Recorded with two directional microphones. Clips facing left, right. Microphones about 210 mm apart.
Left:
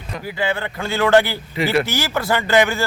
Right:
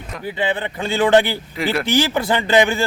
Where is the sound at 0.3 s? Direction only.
20° right (ahead or behind).